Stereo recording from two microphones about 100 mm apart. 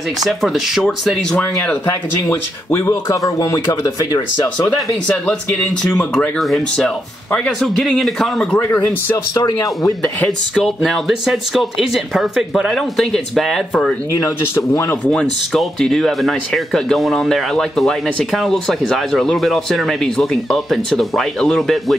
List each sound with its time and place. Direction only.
0.2 s speech: centre (ahead or behind)
1.3 s speech: 15° left (ahead or behind)
1.9 s speech: 30° left (ahead or behind)
4.6 s speech: 15° left (ahead or behind)
8.5 s speech: 20° left (ahead or behind)
9.4 s speech: 35° left (ahead or behind)
10.0 s speech: 10° left (ahead or behind)
14.5 s speech: 30° left (ahead or behind)
15.0 s speech: 5° left (ahead or behind)